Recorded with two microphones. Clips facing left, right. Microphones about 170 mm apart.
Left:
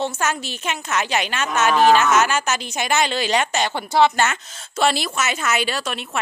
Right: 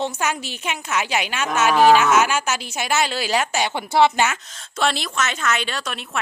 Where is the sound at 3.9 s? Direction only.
25° right (ahead or behind).